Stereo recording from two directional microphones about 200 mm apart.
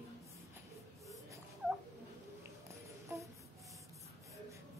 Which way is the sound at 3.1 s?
15° right (ahead or behind).